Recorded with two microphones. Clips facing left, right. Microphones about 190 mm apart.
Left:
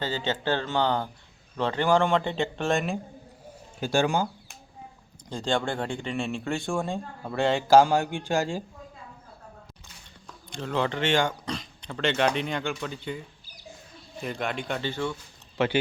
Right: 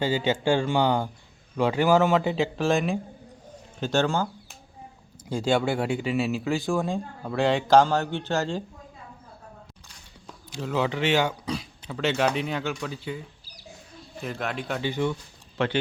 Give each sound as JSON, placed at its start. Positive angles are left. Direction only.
{"t": 0.0, "sound": "speech", "side_deg": -10}
{"t": 3.8, "sound": "speech", "side_deg": 10}
{"t": 5.3, "sound": "speech", "side_deg": -10}
{"t": 10.2, "sound": "speech", "side_deg": -5}
{"t": 14.2, "sound": "speech", "side_deg": 0}
{"t": 14.8, "sound": "speech", "side_deg": -15}
{"t": 15.5, "sound": "speech", "side_deg": 5}